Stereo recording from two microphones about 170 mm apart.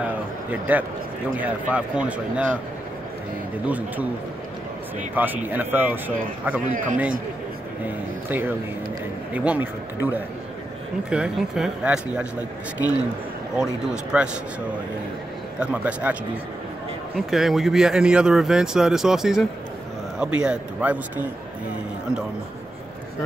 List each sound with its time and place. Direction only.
0.5 s speech: 10° right (ahead or behind)
3.6 s speech: 10° right (ahead or behind)
5.1 s speech: 10° right (ahead or behind)
6.6 s a man's voice: 50° right (ahead or behind)
7.8 s a man's voice: 10° right (ahead or behind)
14.1 s speech: 10° right (ahead or behind)
15.6 s a man's voice: 10° right (ahead or behind)